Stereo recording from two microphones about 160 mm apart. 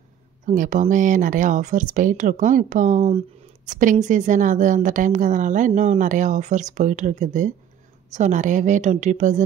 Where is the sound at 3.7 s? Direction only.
55° right (ahead or behind).